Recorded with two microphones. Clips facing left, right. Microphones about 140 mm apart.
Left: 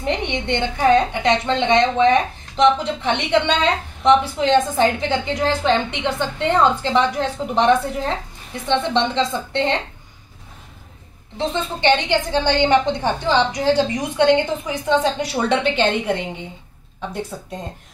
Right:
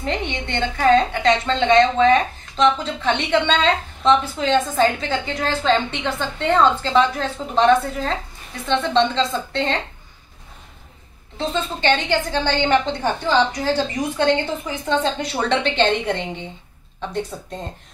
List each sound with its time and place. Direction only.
0.0 s a woman's voice: 20° left (ahead or behind)
11.3 s a woman's voice: 20° left (ahead or behind)